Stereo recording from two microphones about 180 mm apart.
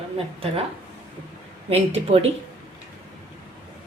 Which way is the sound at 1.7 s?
35° right (ahead or behind).